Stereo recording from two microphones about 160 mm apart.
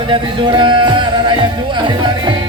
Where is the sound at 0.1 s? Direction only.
30° right (ahead or behind).